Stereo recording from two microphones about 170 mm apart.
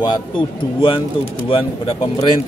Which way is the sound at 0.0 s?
30° left (ahead or behind).